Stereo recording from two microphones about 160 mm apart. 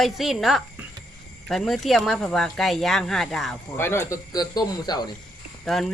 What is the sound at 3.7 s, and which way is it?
Speech, 15° left (ahead or behind).